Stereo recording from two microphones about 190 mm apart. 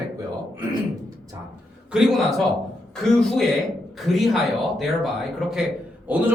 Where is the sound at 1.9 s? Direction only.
Centre (ahead or behind).